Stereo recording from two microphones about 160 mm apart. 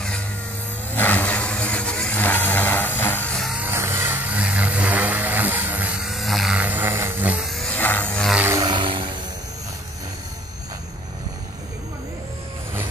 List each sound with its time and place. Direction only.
0.9 s vehicle: 10° left (ahead or behind)
3.7 s vehicle: 15° right (ahead or behind); by 8.4 s 5° left (ahead or behind)
8.4 s vehicle: 15° right (ahead or behind)
8.6 s a sound: 30° right (ahead or behind)